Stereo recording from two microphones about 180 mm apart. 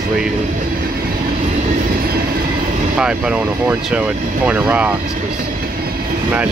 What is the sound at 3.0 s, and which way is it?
Speech, 5° right (ahead or behind).